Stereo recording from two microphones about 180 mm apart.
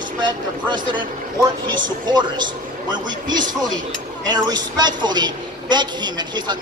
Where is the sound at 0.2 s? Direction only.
25° right (ahead or behind).